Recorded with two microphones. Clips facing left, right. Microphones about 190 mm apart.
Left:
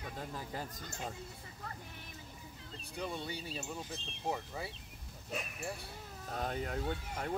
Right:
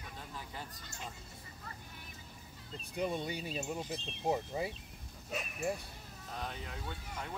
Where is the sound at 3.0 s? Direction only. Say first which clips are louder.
Right 4 dB; 15° right (ahead or behind).